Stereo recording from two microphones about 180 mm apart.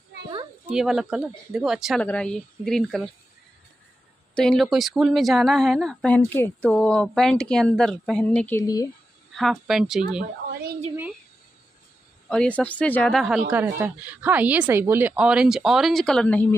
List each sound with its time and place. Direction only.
0.7 s a woman's voice: centre (ahead or behind)
4.4 s a woman's voice: centre (ahead or behind); by 8.8 s 15° left (ahead or behind)
9.3 s a woman's voice: centre (ahead or behind)
10.5 s a sound: 60° right (ahead or behind)
12.3 s speech: 5° left (ahead or behind)
13.5 s speech: 10° right (ahead or behind); by 16.4 s 5° left (ahead or behind)